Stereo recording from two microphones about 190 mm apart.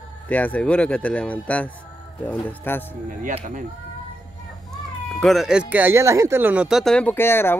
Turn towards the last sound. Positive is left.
turn(degrees=10)  # may be behind; listen again after turning